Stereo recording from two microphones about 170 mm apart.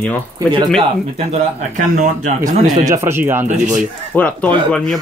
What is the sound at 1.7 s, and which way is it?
Speech, 50° right (ahead or behind).